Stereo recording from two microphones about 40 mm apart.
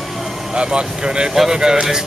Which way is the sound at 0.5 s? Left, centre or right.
Right.